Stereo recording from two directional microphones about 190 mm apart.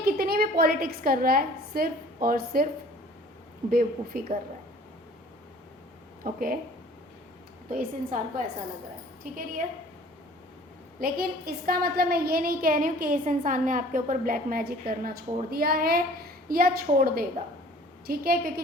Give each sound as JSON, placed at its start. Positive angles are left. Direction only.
{"t": 0.0, "sound": "a woman's voice", "side_deg": -55}
{"t": 3.7, "sound": "a woman's voice", "side_deg": -50}
{"t": 6.2, "sound": "a woman's voice", "side_deg": -50}
{"t": 7.7, "sound": "a woman's voice", "side_deg": -45}
{"t": 11.0, "sound": "a woman's voice", "side_deg": -50}